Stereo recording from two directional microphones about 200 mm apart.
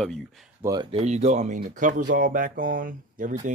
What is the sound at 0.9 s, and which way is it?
Speech, 35° right (ahead or behind).